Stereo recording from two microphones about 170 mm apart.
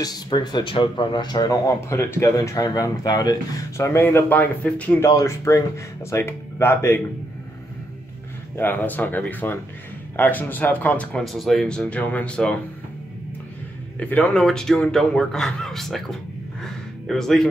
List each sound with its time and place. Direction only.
0.0 s speech: 25° left (ahead or behind)
8.5 s speech: 10° left (ahead or behind)
13.9 s a man's voice: 10° left (ahead or behind)
16.6 s a sound: centre (ahead or behind)